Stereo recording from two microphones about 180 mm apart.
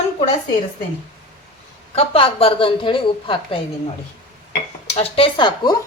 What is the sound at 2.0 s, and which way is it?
A woman's voice, 30° left (ahead or behind).